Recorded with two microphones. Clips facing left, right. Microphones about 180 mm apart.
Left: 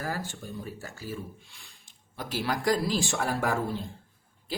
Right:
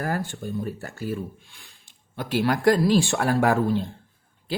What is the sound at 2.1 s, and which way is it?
Speech, 65° right (ahead or behind).